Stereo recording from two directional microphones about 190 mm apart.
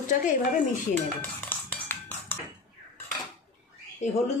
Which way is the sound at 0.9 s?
10° left (ahead or behind).